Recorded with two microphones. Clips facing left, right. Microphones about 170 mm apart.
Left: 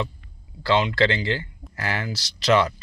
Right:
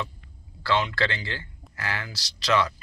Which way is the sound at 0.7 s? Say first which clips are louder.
Left 5 dB; 20° left (ahead or behind).